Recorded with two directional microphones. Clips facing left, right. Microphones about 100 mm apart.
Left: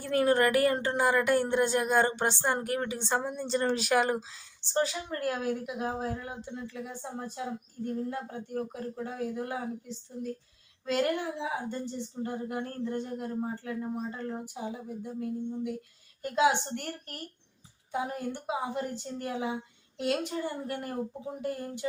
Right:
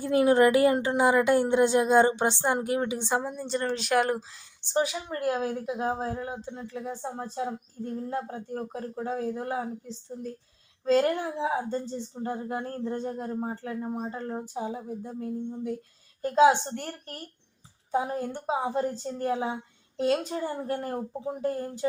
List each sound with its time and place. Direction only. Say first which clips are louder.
0.0 s speech: right 4 dB; 15° right (ahead or behind)
3.3 s speech: left 1 dB; centre (ahead or behind)
4.7 s speech: right 2 dB; 15° right (ahead or behind)
5.1 s speech: right 4 dB; 25° right (ahead or behind)